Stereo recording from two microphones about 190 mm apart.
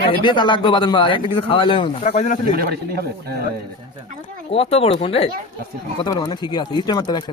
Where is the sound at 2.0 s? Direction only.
40° left (ahead or behind).